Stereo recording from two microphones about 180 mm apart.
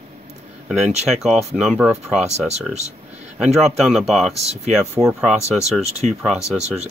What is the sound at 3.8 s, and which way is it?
Speech, centre (ahead or behind).